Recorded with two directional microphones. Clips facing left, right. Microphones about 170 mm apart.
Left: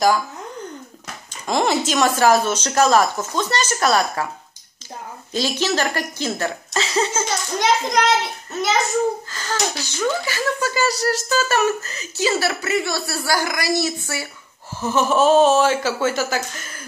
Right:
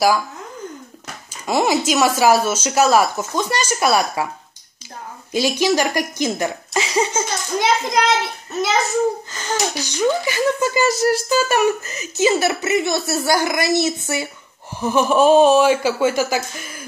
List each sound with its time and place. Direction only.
1.5 s speech: 5° right (ahead or behind)
5.3 s speech: 10° right (ahead or behind)
7.6 s a child's voice: centre (ahead or behind)
9.3 s speech: 20° right (ahead or behind)